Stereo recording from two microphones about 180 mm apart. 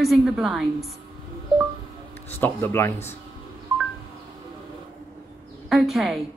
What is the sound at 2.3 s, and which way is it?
Speech, 10° left (ahead or behind).